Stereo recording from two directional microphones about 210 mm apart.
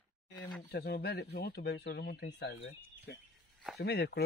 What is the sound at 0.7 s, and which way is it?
Speech, 50° left (ahead or behind).